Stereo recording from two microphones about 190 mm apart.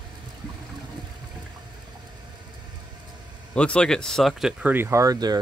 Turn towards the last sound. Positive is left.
turn(degrees=-20)  # may be behind; listen again after turning